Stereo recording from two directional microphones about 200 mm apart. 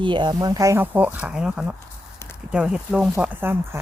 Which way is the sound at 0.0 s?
25° right (ahead or behind).